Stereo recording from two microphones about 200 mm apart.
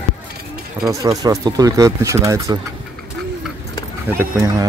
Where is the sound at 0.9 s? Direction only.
15° right (ahead or behind).